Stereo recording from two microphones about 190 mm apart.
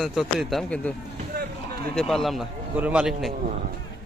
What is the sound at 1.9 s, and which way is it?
Speech, centre (ahead or behind).